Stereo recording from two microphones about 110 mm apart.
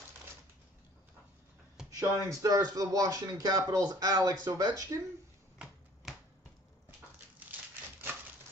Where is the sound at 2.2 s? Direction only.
30° right (ahead or behind).